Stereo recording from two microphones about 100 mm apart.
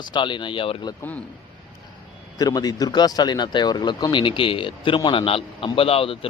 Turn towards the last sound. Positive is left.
turn(degrees=70)  # may be behind; listen again after turning